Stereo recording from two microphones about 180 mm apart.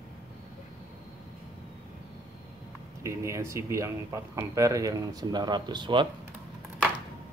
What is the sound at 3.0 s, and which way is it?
Speech, 15° right (ahead or behind).